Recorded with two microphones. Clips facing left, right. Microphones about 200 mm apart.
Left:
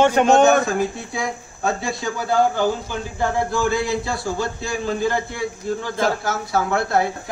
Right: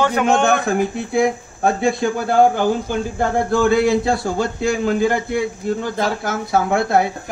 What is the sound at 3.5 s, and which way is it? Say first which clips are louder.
A man's voice: right 6 dB; 55° right (ahead or behind).